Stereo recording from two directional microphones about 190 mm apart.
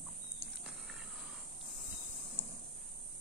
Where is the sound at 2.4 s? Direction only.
15° right (ahead or behind).